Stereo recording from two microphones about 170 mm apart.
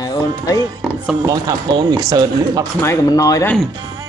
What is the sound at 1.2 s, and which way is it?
Speech, 20° right (ahead or behind).